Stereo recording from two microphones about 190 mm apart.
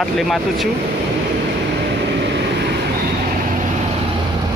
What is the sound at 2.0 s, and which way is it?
Vehicle, 65° right (ahead or behind).